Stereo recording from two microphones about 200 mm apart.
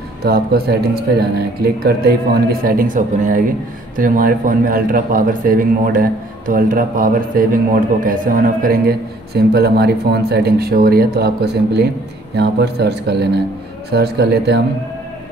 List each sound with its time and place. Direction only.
0.2 s a man's voice: 50° right (ahead or behind)